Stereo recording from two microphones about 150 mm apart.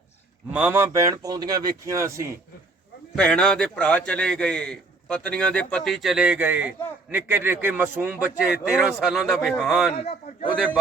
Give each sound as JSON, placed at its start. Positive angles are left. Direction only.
{"t": 0.5, "sound": "a man's voice", "side_deg": -10}
{"t": 3.2, "sound": "a man's voice", "side_deg": 5}
{"t": 10.0, "sound": "a man's voice", "side_deg": 45}